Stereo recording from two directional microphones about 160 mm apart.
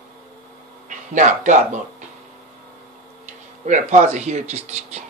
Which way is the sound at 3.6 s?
50° right (ahead or behind).